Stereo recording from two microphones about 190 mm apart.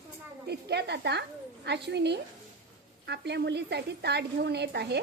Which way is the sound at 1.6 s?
60° right (ahead or behind).